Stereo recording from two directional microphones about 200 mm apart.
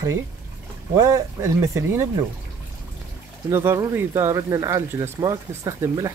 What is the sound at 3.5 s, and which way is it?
Speech, 15° right (ahead or behind).